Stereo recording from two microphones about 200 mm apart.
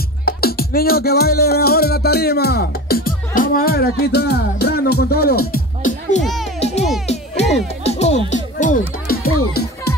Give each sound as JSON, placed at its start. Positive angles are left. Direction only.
{"t": 0.2, "sound": "music", "side_deg": 50}